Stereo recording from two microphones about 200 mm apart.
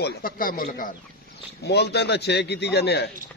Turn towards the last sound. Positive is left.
turn(degrees=55)  # may be behind; listen again after turning